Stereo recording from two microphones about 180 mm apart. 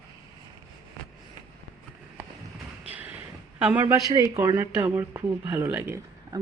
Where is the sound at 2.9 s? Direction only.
10° right (ahead or behind).